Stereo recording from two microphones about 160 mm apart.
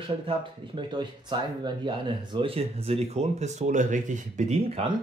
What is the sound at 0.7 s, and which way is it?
Speech, 30° right (ahead or behind).